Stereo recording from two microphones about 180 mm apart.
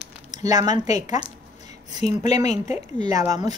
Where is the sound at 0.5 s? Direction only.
20° right (ahead or behind).